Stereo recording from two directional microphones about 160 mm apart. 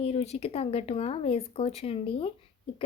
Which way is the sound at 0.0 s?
40° left (ahead or behind).